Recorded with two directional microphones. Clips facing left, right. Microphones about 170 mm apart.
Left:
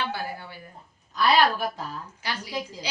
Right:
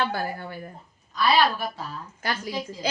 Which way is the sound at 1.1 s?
15° left (ahead or behind).